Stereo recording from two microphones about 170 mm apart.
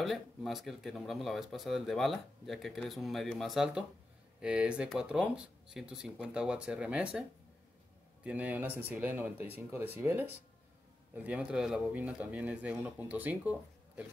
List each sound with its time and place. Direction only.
0.0 s speech: centre (ahead or behind)